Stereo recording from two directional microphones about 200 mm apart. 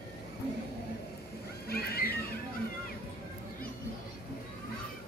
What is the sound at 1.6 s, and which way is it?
Music, 50° left (ahead or behind).